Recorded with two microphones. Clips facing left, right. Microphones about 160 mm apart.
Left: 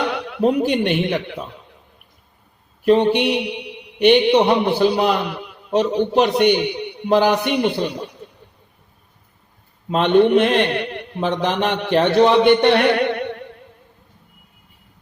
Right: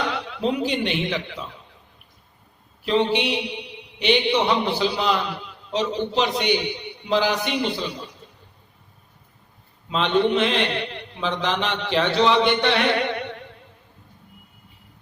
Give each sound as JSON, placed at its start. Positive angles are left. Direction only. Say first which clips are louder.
{"t": 0.1, "sound": "a man's voice", "louder": "left 6 dB", "side_deg": 55}
{"t": 2.8, "sound": "mantra", "louder": "left 6 dB", "side_deg": 55}
{"t": 9.9, "sound": "a man's voice", "louder": "left 6 dB", "side_deg": 55}